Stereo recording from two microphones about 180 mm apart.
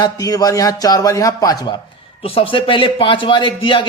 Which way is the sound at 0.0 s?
20° left (ahead or behind).